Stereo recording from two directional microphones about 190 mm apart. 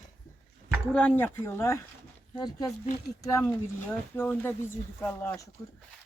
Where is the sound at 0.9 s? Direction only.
5° left (ahead or behind).